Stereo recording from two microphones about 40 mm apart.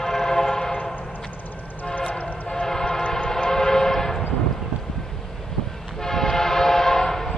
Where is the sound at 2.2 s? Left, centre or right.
Left.